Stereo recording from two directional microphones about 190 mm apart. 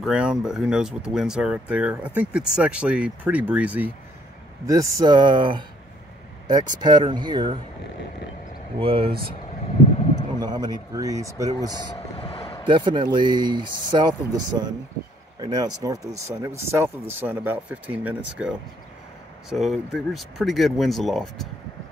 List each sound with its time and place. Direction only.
0.0 s speech: 5° right (ahead or behind); by 7.6 s 25° right (ahead or behind)
8.7 s speech: 30° right (ahead or behind)
10.4 s speech: 20° right (ahead or behind)
12.2 s vehicle: 30° left (ahead or behind)
12.6 s speech: 25° right (ahead or behind); by 18.5 s 10° right (ahead or behind)
19.5 s speech: centre (ahead or behind)